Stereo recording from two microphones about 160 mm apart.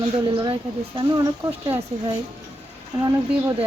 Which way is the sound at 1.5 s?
10° right (ahead or behind).